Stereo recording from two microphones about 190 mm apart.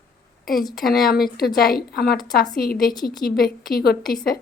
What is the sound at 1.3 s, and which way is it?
A woman's voice, 50° left (ahead or behind).